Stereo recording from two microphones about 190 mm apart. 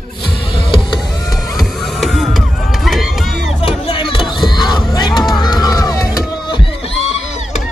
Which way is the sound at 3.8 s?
25° left (ahead or behind).